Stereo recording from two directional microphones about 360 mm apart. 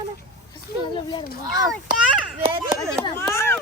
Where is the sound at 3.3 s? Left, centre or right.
Centre.